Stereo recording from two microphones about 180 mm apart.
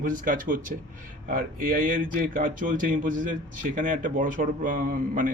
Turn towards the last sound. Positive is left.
turn(degrees=-50)  # may be behind; listen again after turning